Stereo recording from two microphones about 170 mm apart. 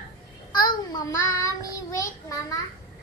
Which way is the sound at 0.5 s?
25° left (ahead or behind).